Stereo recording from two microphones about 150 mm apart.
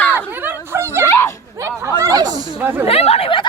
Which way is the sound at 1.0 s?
20° left (ahead or behind).